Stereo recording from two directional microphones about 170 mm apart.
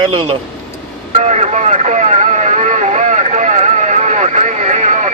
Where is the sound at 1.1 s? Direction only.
40° right (ahead or behind).